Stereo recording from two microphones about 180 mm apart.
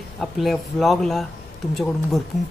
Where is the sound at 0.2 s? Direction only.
Centre (ahead or behind).